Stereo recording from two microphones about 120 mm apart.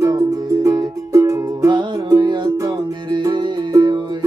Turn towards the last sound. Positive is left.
turn(degrees=-40)  # may be behind; listen again after turning